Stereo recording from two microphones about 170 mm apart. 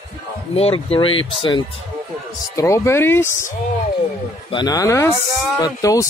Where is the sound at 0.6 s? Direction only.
35° left (ahead or behind).